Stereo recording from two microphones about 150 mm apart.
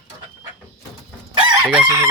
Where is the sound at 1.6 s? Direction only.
5° right (ahead or behind).